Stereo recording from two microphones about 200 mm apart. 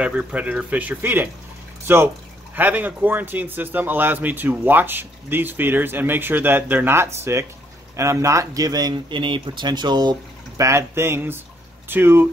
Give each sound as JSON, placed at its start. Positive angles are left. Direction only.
{"t": 0.0, "sound": "a man's voice", "side_deg": -5}